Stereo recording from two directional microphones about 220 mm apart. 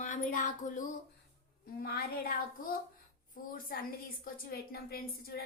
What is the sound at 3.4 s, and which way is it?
Speech, 40° left (ahead or behind).